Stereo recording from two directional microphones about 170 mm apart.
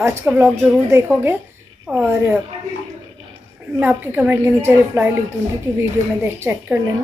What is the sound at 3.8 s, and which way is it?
A woman's voice, 10° right (ahead or behind).